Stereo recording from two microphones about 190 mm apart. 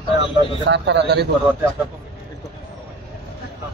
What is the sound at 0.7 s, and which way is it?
Speech, 65° right (ahead or behind).